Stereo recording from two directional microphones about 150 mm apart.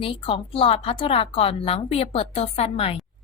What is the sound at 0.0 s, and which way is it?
A woman's voice, 35° left (ahead or behind).